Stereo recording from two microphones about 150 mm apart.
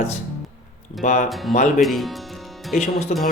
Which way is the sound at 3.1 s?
55° left (ahead or behind).